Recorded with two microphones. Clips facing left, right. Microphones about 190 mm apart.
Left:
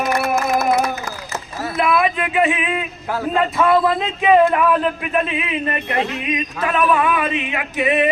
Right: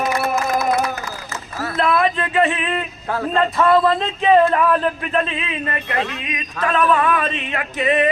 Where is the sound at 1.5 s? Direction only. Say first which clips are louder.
Even; 15° left (ahead or behind).